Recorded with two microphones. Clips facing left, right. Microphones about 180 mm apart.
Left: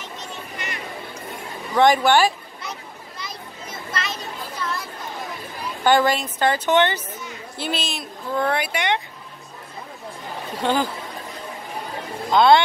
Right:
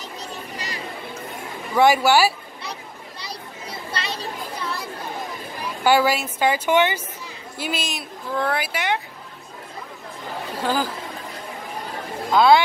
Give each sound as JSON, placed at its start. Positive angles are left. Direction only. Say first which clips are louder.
{"t": 0.0, "sound": "a sound", "louder": "right 1 dB", "side_deg": -35}
{"t": 1.8, "sound": "a woman's voice", "louder": "even", "side_deg": -10}
{"t": 3.2, "sound": "children playing", "louder": "even", "side_deg": -30}
{"t": 5.9, "sound": "a woman's voice", "louder": "even", "side_deg": -10}
{"t": 10.6, "sound": "speech", "louder": "left 2 dB", "side_deg": -5}
{"t": 12.3, "sound": "speech", "louder": "even", "side_deg": -5}